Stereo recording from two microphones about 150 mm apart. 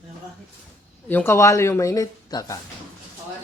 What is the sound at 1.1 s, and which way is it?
Speech, 15° left (ahead or behind).